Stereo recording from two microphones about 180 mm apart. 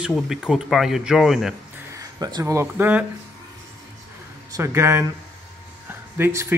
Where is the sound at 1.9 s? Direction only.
20° right (ahead or behind).